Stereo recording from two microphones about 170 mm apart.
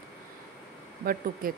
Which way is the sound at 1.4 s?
55° right (ahead or behind).